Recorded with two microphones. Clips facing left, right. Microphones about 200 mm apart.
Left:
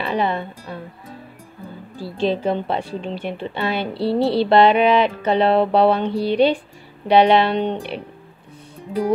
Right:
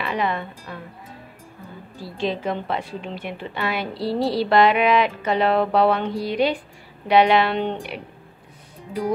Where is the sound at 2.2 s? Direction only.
30° left (ahead or behind).